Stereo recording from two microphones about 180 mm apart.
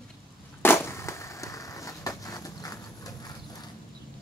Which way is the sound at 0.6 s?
15° left (ahead or behind).